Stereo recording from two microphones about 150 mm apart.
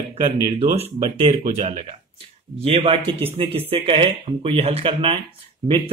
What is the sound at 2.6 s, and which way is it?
A man's voice, 40° right (ahead or behind).